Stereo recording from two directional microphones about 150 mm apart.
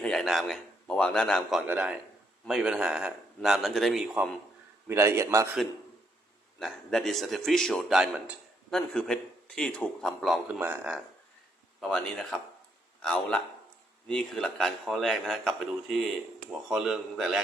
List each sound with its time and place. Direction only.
0.0 s a man's voice: 5° left (ahead or behind)
1.6 s a man's voice: 10° right (ahead or behind)
4.9 s a man's voice: 15° right (ahead or behind)
6.6 s a man's voice: 5° left (ahead or behind)
10.6 s a man's voice: 15° right (ahead or behind)
11.8 s a man's voice: 5° left (ahead or behind)